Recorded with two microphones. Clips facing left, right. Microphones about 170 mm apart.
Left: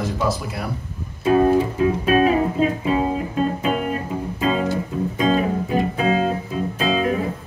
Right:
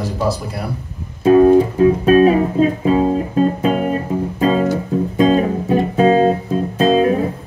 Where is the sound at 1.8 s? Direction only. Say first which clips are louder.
Right 7 dB; 40° right (ahead or behind).